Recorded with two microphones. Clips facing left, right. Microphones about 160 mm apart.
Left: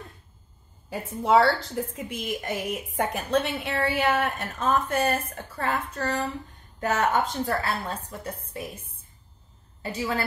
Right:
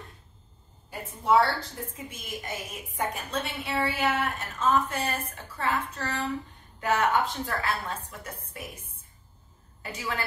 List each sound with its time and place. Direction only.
0.8 s a woman's voice: 90° left
2.0 s a woman's voice: 65° left (ahead or behind)
4.6 s a woman's voice: 45° left (ahead or behind)
6.8 s a woman's voice: 40° left (ahead or behind)
9.8 s a woman's voice: 30° left (ahead or behind)